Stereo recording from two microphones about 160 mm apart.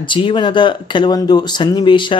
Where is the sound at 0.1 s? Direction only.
30° left (ahead or behind).